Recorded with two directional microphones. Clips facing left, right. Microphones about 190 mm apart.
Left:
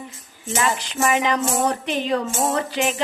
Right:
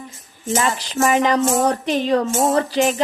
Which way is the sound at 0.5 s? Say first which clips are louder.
Right 3 dB; 40° right (ahead or behind).